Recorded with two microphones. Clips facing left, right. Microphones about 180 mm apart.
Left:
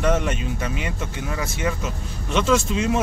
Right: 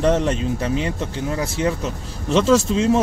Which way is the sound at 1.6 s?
35° right (ahead or behind).